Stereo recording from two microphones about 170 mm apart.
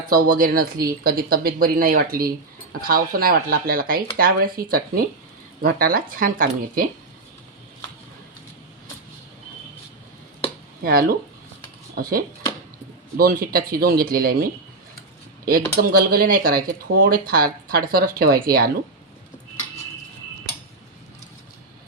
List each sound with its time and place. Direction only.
0.1 s speech: 55° right (ahead or behind)
10.8 s speech: 60° right (ahead or behind)
13.1 s speech: 60° right (ahead or behind)